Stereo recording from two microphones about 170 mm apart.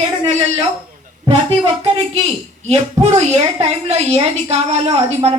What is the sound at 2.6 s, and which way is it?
A woman's voice, 40° right (ahead or behind).